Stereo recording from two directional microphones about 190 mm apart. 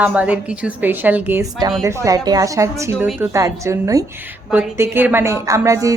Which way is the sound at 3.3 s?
15° right (ahead or behind).